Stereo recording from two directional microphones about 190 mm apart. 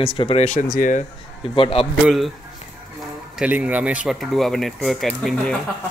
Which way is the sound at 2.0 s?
Centre (ahead or behind).